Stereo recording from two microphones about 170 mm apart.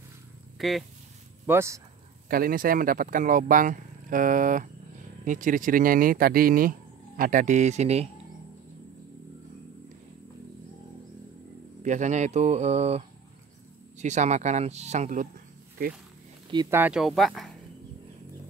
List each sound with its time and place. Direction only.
0.6 s speech: centre (ahead or behind)
1.4 s speech: 15° right (ahead or behind)
2.2 s speech: 55° right (ahead or behind); by 8.1 s 40° right (ahead or behind)
11.8 s speech: 45° right (ahead or behind)
16.7 s speech: 5° right (ahead or behind)